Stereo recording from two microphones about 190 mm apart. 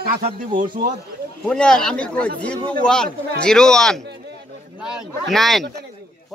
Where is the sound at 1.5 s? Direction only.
5° left (ahead or behind).